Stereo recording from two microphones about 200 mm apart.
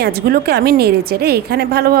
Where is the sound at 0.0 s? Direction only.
50° right (ahead or behind).